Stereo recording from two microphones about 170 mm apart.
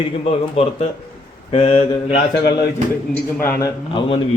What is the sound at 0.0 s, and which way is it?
A man's voice, 35° left (ahead or behind).